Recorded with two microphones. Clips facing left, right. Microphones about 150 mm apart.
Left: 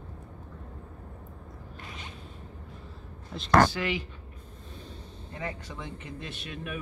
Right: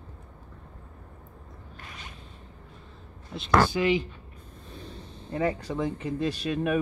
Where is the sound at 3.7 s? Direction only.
20° right (ahead or behind).